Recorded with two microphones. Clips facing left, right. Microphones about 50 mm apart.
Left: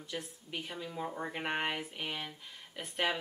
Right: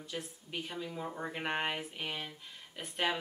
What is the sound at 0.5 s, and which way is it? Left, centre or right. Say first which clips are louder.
Speech: right 1 dB; centre.